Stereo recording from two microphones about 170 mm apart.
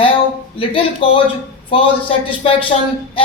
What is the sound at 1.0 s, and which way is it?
Speech, 30° left (ahead or behind).